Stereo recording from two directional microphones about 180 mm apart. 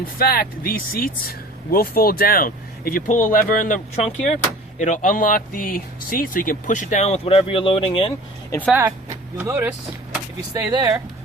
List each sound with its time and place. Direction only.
0.2 s speech: 55° left (ahead or behind); by 8.1 s 30° left (ahead or behind)
8.7 s speech: 15° right (ahead or behind)